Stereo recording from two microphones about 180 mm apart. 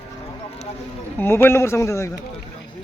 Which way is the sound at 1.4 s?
15° left (ahead or behind).